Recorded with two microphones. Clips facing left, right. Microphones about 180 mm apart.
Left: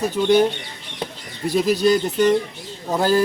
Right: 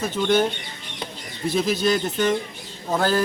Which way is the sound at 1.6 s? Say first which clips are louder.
Left 5 dB; 40° left (ahead or behind).